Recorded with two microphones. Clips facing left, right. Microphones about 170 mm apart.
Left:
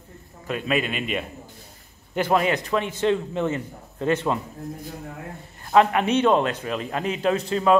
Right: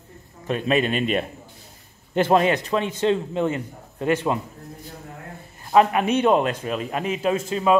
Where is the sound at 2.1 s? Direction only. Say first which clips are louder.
Right 3 dB; 25° right (ahead or behind).